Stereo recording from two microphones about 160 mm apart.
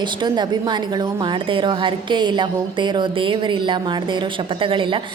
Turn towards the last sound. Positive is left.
turn(degrees=-35)  # may be behind; listen again after turning